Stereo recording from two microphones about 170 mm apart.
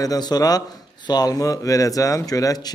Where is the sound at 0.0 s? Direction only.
20° left (ahead or behind).